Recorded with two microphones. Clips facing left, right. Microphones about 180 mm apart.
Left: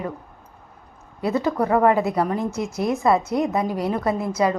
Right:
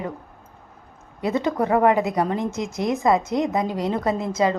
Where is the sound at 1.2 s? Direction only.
20° right (ahead or behind).